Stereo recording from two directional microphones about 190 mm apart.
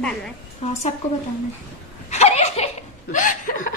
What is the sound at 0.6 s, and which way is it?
Speech, 35° left (ahead or behind).